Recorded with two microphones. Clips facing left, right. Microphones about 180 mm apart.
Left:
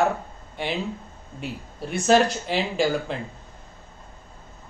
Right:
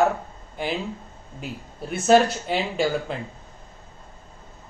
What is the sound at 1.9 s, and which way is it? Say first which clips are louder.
A man's voice: right 2 dB; 5° right (ahead or behind).